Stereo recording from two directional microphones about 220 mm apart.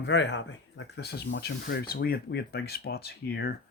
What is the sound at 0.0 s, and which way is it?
Speech, 55° left (ahead or behind).